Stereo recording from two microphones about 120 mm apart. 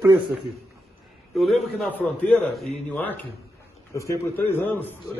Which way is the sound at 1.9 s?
10° left (ahead or behind).